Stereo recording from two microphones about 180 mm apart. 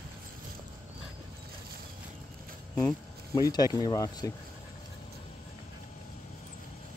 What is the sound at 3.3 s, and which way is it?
Speech, 20° left (ahead or behind).